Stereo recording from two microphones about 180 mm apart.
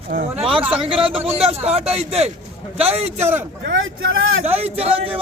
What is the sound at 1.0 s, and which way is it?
Speech, 30° right (ahead or behind).